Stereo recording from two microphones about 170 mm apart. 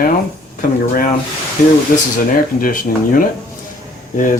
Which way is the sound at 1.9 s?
55° left (ahead or behind).